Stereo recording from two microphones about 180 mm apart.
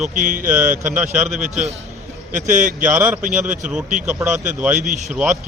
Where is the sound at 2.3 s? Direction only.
45° right (ahead or behind).